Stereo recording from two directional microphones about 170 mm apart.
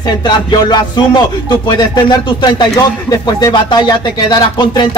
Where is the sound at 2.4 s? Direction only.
25° left (ahead or behind).